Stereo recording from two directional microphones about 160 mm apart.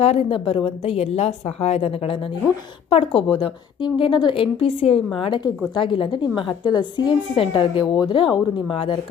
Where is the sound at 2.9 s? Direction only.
35° left (ahead or behind).